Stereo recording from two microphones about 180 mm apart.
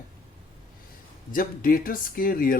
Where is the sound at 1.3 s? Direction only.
50° left (ahead or behind).